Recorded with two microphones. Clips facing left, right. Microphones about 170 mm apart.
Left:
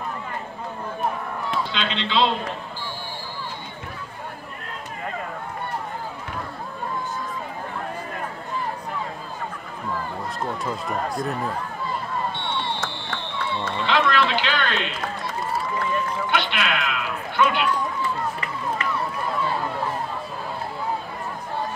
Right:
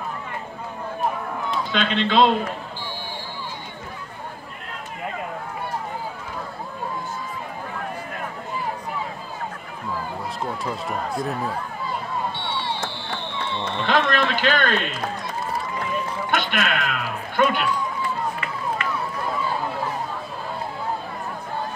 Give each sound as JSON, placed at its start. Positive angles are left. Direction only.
{"t": 1.7, "sound": "a man's voice", "side_deg": -50}
{"t": 10.4, "sound": "speech", "side_deg": 0}
{"t": 13.8, "sound": "a man's voice", "side_deg": -45}
{"t": 16.3, "sound": "a sound", "side_deg": -45}